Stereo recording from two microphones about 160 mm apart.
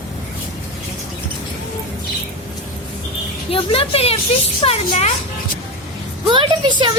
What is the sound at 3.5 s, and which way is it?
Speech, 35° left (ahead or behind).